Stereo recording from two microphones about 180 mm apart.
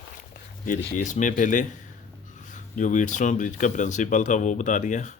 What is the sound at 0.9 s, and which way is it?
Speech, 45° left (ahead or behind).